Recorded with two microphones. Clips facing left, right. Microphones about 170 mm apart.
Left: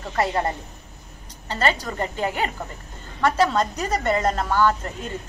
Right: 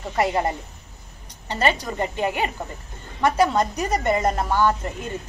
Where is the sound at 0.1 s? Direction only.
15° right (ahead or behind).